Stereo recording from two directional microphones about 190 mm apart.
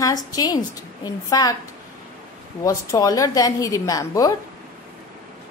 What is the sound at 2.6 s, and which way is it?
A woman's voice, 15° left (ahead or behind).